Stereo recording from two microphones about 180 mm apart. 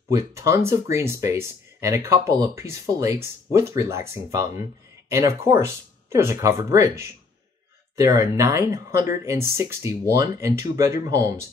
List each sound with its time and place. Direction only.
0.1 s speech: 15° right (ahead or behind)